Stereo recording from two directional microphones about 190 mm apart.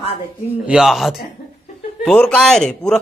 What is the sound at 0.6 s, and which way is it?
A man's voice, 5° right (ahead or behind).